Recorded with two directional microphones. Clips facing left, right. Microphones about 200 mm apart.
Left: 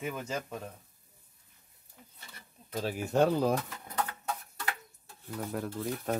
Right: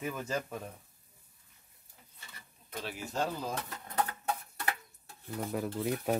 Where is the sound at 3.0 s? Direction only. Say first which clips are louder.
Left 9 dB; 65° left (ahead or behind).